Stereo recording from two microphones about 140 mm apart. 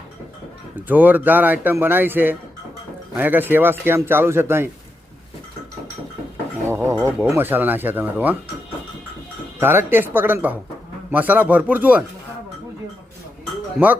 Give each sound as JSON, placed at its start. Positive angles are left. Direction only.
{"t": 0.9, "sound": "a man's voice", "side_deg": -10}
{"t": 6.7, "sound": "speech", "side_deg": -20}
{"t": 9.6, "sound": "a man's voice", "side_deg": -15}
{"t": 13.7, "sound": "a man's voice", "side_deg": -10}